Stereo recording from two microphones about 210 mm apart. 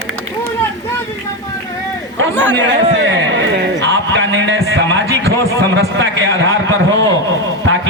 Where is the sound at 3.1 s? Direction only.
60° right (ahead or behind).